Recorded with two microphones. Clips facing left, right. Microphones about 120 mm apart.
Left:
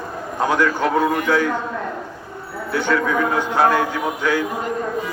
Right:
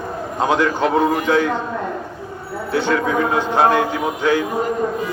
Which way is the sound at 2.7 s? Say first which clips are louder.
Right 1 dB; 25° right (ahead or behind).